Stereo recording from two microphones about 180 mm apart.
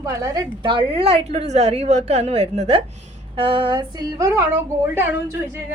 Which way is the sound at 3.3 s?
30° right (ahead or behind).